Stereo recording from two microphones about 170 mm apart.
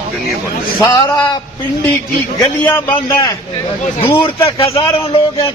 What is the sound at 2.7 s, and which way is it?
Speech, 20° left (ahead or behind).